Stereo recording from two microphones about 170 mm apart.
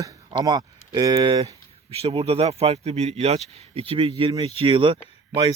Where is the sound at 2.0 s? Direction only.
35° right (ahead or behind).